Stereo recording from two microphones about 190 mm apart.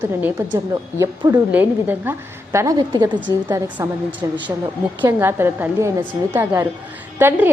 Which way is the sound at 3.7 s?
10° right (ahead or behind).